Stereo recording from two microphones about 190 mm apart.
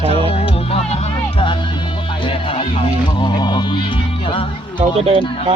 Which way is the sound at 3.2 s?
25° left (ahead or behind).